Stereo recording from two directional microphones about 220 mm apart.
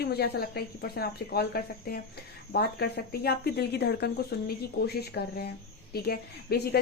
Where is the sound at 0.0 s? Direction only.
45° left (ahead or behind).